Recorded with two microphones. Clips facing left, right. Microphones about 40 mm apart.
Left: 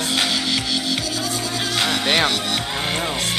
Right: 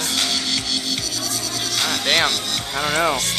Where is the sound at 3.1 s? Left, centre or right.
Centre.